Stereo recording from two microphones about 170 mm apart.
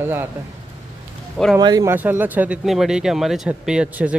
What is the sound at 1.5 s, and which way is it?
Speech, 25° right (ahead or behind).